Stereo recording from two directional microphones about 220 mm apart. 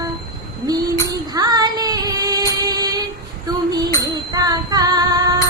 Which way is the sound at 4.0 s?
15° right (ahead or behind).